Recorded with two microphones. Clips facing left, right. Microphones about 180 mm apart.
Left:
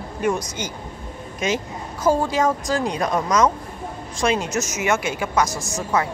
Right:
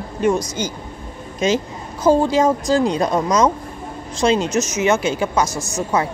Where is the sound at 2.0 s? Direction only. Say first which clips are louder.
Right 5 dB; 25° right (ahead or behind).